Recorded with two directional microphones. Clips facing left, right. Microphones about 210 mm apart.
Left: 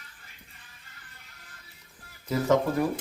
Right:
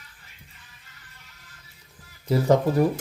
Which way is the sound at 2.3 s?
35° right (ahead or behind).